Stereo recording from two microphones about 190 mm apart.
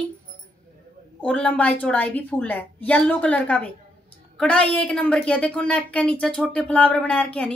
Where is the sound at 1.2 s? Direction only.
5° left (ahead or behind).